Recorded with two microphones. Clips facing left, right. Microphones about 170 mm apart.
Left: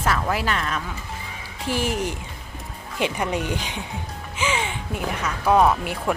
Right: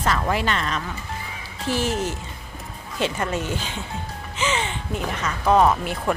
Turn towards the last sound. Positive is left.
turn(degrees=10)  # may be behind; listen again after turning